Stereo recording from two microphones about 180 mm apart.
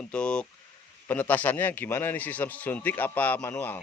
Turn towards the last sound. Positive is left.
turn(degrees=10)  # may be behind; listen again after turning